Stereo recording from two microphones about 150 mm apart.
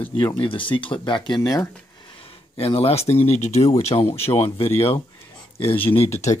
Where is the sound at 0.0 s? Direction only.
35° left (ahead or behind).